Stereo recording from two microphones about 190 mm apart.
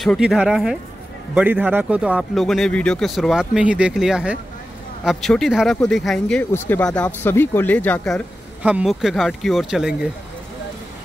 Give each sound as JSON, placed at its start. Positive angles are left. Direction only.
{"t": 0.0, "sound": "speech", "side_deg": 0}
{"t": 8.6, "sound": "speech", "side_deg": -5}